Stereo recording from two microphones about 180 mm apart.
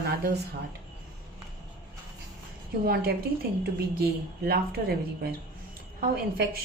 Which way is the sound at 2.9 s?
55° right (ahead or behind).